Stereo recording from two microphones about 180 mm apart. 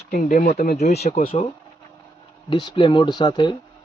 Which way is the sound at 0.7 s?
40° left (ahead or behind).